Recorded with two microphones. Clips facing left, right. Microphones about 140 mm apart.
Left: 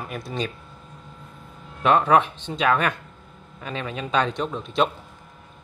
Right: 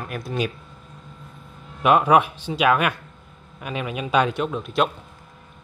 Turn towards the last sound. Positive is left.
turn(degrees=-5)  # may be behind; listen again after turning